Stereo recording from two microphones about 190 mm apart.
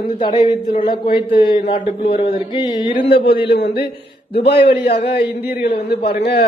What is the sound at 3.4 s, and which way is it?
Speech, 55° left (ahead or behind).